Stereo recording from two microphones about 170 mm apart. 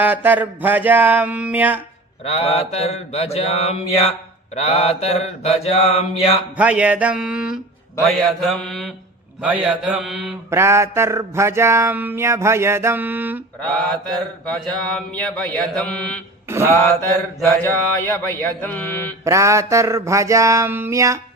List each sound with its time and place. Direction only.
0.0 s mantra: 10° right (ahead or behind)
2.2 s mantra: 35° left (ahead or behind)
6.6 s mantra: 10° right (ahead or behind)
9.4 s mantra: 10° right (ahead or behind)
10.5 s mantra: 15° right (ahead or behind)
13.6 s mantra: 5° left (ahead or behind)
16.5 s mantra: 15° right (ahead or behind)
17.6 s mantra: 10° left (ahead or behind)
19.2 s mantra: 15° right (ahead or behind)